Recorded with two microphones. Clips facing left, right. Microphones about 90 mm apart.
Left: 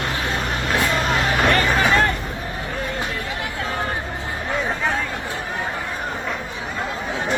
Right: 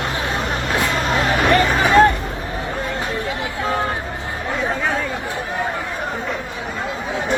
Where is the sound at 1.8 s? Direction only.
20° right (ahead or behind).